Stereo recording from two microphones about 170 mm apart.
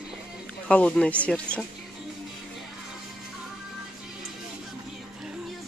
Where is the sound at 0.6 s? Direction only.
5° left (ahead or behind).